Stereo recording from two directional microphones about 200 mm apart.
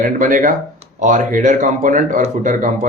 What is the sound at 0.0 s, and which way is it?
Speech, 45° right (ahead or behind).